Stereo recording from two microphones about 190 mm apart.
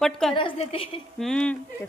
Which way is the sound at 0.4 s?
30° left (ahead or behind).